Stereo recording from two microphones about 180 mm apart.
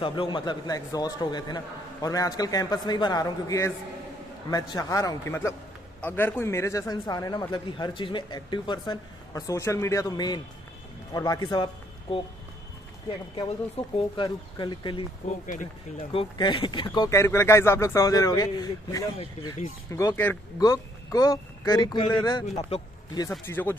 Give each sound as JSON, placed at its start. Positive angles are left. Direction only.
{"t": 0.0, "sound": "a man's voice", "side_deg": 25}
{"t": 13.9, "sound": "a man's voice", "side_deg": 25}
{"t": 15.2, "sound": "speech", "side_deg": 45}
{"t": 16.1, "sound": "a man's voice", "side_deg": 30}
{"t": 23.4, "sound": "speech", "side_deg": 10}